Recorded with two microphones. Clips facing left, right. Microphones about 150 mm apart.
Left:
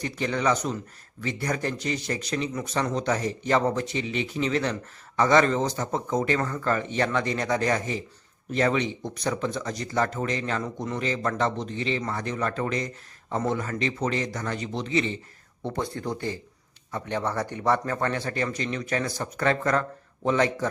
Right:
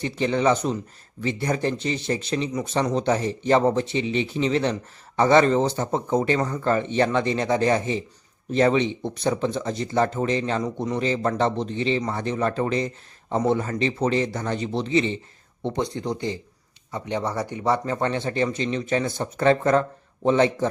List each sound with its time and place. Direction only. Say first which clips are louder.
0.0 s speech: right 4 dB; 25° right (ahead or behind)
6.4 s speech: right 3 dB; 20° right (ahead or behind)
6.7 s speech: right 5 dB; 30° right (ahead or behind)